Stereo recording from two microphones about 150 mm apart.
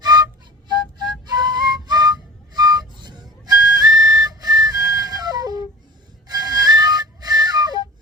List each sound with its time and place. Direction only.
0.9 s music: 30° right (ahead or behind)
6.2 s flute: 25° right (ahead or behind)